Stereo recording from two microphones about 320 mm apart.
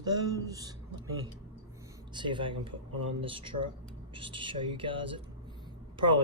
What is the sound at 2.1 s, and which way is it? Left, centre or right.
Speech, centre.